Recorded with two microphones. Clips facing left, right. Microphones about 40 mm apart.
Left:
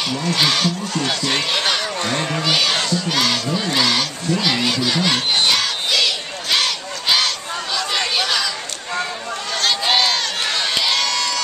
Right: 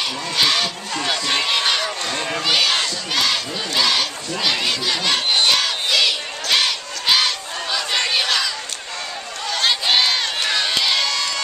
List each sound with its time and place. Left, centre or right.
0.2 s speech: centre
2.0 s speech: centre
2.2 s crowd: centre
9.8 s crowd: centre